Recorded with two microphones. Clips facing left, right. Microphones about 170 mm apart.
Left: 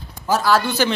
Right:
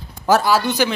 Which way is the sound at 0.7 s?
15° right (ahead or behind).